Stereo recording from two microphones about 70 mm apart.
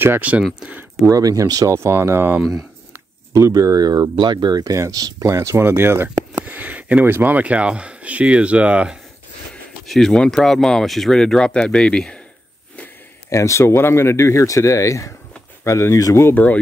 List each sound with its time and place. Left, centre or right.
0.2 s speech: right
1.0 s speech: right
3.3 s speech: right
5.2 s speech: right; by 8.9 s centre
9.8 s speech: centre
13.3 s speech: left
16.3 s speech: left